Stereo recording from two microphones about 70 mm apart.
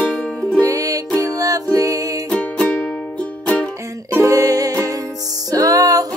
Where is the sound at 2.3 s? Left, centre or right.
Centre.